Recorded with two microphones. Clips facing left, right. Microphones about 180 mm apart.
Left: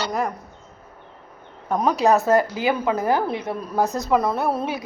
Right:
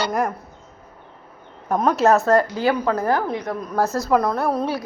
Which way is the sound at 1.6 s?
Centre (ahead or behind).